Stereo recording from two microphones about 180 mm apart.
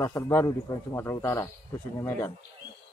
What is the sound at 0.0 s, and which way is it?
Speech, 15° left (ahead or behind).